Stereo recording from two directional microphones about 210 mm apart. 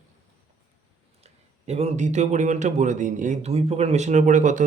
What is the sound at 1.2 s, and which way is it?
Speech, 30° right (ahead or behind).